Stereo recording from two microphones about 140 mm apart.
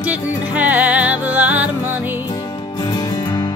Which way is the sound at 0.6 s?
10° right (ahead or behind).